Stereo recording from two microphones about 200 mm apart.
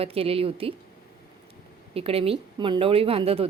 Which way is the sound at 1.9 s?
30° right (ahead or behind).